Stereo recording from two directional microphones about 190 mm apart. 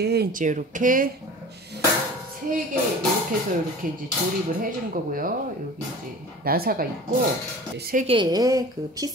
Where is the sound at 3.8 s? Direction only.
45° right (ahead or behind).